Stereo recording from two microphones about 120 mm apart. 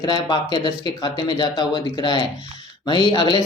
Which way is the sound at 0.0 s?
35° left (ahead or behind).